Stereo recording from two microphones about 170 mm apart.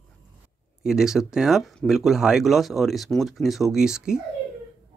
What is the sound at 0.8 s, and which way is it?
Speech, 5° right (ahead or behind).